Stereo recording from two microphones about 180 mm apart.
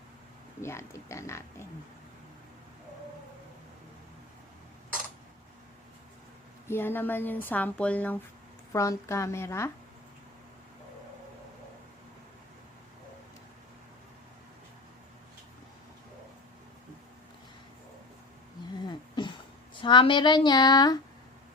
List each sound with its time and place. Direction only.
0.6 s speech: 15° left (ahead or behind)
6.7 s speech: 10° left (ahead or behind)
18.9 s a sound: 25° left (ahead or behind)
19.8 s speech: 25° left (ahead or behind)